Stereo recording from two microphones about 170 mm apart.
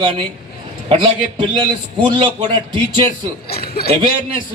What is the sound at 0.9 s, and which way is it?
A man's voice, 30° right (ahead or behind).